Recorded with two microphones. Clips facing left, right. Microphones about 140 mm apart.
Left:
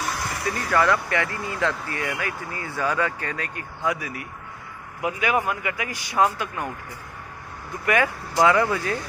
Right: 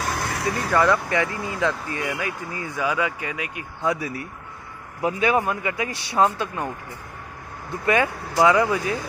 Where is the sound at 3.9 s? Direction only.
30° right (ahead or behind).